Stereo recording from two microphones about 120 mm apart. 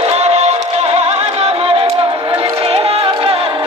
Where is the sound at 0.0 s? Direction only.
60° right (ahead or behind).